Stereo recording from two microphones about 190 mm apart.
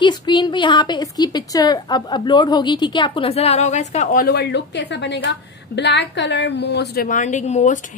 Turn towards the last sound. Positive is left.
turn(degrees=40)  # may be behind; listen again after turning